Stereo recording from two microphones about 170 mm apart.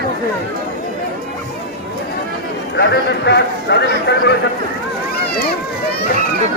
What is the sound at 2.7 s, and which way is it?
Speech, 90° left.